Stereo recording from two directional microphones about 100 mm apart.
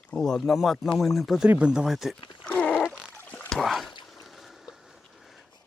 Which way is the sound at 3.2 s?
20° left (ahead or behind).